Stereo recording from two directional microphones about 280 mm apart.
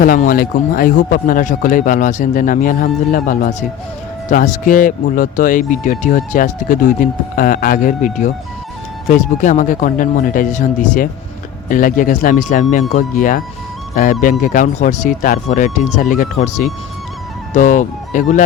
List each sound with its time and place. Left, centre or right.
0.0 s a man's voice: left